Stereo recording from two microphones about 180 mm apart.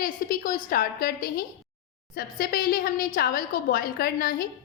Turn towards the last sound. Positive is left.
turn(degrees=55)  # may be behind; listen again after turning